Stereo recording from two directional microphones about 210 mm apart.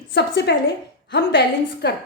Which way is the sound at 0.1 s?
55° left (ahead or behind).